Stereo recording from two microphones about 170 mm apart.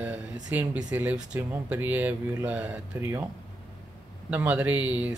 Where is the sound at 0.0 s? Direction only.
10° right (ahead or behind).